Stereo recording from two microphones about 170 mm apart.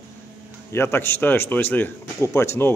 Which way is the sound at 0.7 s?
15° left (ahead or behind).